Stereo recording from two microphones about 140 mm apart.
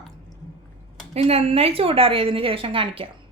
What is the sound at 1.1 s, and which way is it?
Speech, 45° right (ahead or behind).